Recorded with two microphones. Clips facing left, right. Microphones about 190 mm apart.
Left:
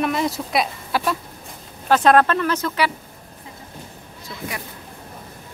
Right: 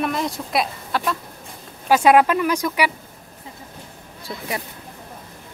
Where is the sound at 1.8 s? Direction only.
10° right (ahead or behind).